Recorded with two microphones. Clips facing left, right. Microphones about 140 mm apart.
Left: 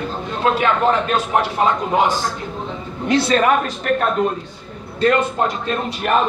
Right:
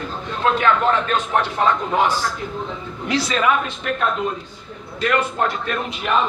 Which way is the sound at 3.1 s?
50° left (ahead or behind).